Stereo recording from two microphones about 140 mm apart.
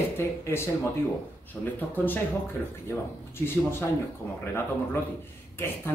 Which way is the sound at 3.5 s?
15° left (ahead or behind).